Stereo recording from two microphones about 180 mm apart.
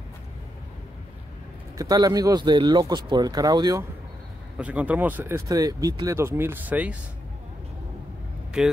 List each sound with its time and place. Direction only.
1.8 s speech: 20° right (ahead or behind)
4.6 s speech: 5° right (ahead or behind)
8.6 s speech: 5° right (ahead or behind)